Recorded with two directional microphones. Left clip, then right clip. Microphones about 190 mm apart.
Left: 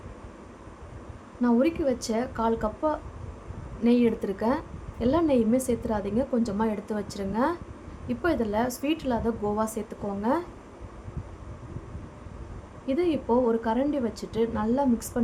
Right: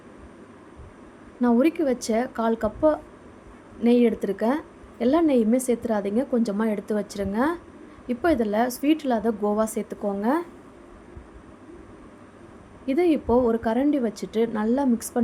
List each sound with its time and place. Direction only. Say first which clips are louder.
1.4 s a woman's voice: right 3 dB; 20° right (ahead or behind)
12.8 s a woman's voice: right 4 dB; 20° right (ahead or behind)